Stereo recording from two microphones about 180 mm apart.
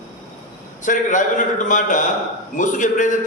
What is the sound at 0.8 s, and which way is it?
A man's voice, 45° left (ahead or behind).